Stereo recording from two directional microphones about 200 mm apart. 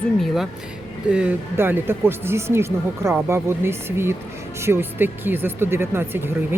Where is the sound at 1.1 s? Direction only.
10° right (ahead or behind).